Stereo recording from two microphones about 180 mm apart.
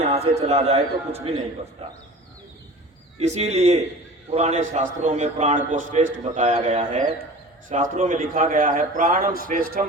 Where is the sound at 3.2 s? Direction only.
35° right (ahead or behind).